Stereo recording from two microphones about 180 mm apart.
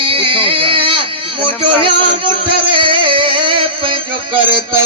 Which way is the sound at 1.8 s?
30° right (ahead or behind).